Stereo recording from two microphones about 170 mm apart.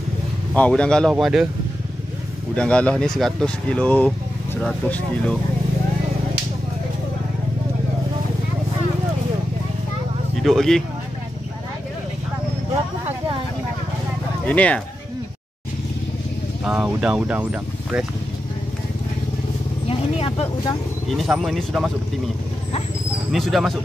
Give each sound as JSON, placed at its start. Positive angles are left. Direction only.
{"t": 0.6, "sound": "speech", "side_deg": 5}
{"t": 2.5, "sound": "speech", "side_deg": 5}
{"t": 10.4, "sound": "speech", "side_deg": 0}
{"t": 14.4, "sound": "speech", "side_deg": 10}
{"t": 16.6, "sound": "speech", "side_deg": -5}
{"t": 19.9, "sound": "vehicle", "side_deg": 35}
{"t": 21.1, "sound": "speech", "side_deg": 0}
{"t": 23.3, "sound": "speech", "side_deg": 0}